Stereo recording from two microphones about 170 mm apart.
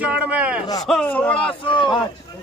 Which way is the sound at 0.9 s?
5° left (ahead or behind).